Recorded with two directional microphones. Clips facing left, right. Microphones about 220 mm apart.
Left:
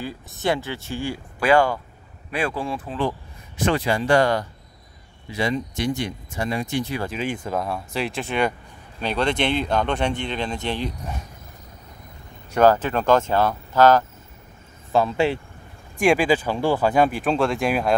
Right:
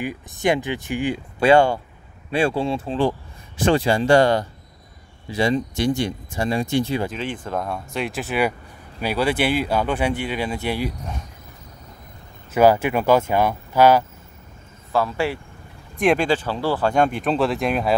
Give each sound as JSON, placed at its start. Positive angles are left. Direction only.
{"t": 0.0, "sound": "speech", "side_deg": -15}
{"t": 7.1, "sound": "speech", "side_deg": 10}
{"t": 12.4, "sound": "speech", "side_deg": -10}
{"t": 14.9, "sound": "speech", "side_deg": 20}
{"t": 16.0, "sound": "speech", "side_deg": 0}
{"t": 16.3, "sound": "speech", "side_deg": 15}
{"t": 16.9, "sound": "speech", "side_deg": 5}